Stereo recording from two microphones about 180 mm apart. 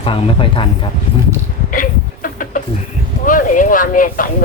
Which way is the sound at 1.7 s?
50° left (ahead or behind).